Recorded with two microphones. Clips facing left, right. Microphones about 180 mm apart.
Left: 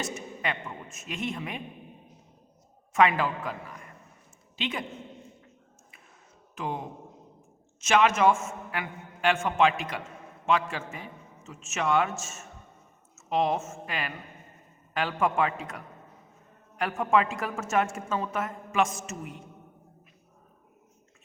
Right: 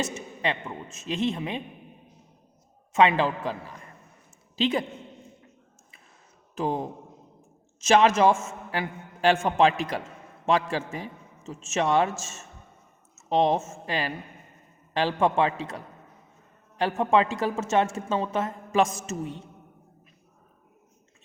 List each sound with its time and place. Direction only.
0.0 s a sound: 25° right (ahead or behind)
0.9 s a woman's voice: 25° right (ahead or behind)
2.9 s a woman's voice: 25° right (ahead or behind)
6.6 s a man's voice: 35° right (ahead or behind)